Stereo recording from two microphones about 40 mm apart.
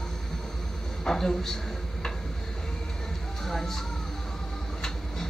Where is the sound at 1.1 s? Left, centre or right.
Centre.